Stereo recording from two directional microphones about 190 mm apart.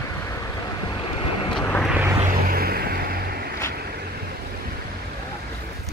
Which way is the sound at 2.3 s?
50° right (ahead or behind).